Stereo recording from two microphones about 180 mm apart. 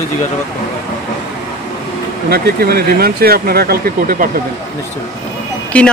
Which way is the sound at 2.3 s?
60° right (ahead or behind).